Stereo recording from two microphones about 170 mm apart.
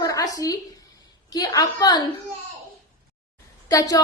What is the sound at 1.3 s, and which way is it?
Speech, 20° left (ahead or behind).